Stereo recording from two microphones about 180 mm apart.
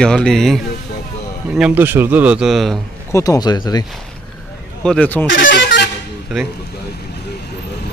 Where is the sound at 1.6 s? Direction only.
10° right (ahead or behind).